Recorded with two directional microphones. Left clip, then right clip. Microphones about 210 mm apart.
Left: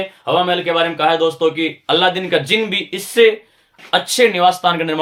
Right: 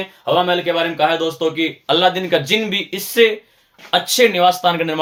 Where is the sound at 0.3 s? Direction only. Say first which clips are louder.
Even; 10° left (ahead or behind).